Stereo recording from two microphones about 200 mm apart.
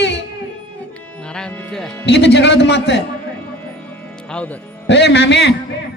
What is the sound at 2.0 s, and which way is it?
Speech, 55° left (ahead or behind).